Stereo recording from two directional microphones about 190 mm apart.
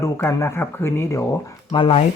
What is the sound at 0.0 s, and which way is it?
Speech, 15° left (ahead or behind).